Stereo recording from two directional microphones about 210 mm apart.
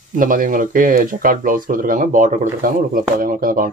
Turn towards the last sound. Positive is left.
turn(degrees=-40)  # may be behind; listen again after turning